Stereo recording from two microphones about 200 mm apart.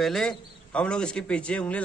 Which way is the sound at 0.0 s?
Centre (ahead or behind).